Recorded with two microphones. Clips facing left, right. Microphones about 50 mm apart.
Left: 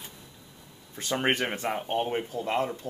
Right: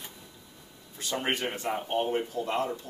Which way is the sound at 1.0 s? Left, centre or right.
Left.